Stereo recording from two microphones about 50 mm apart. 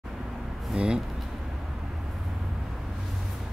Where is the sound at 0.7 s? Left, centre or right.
Centre.